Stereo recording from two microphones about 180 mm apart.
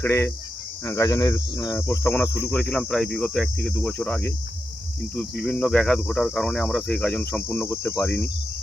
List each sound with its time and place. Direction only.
0.0 s speech: 15° left (ahead or behind)